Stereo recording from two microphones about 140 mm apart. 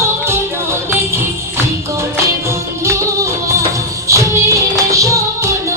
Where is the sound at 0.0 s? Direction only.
20° right (ahead or behind).